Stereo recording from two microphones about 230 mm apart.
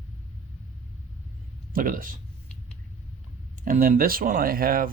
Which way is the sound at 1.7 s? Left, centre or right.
Right.